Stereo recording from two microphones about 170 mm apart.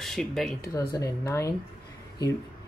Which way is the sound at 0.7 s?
20° left (ahead or behind).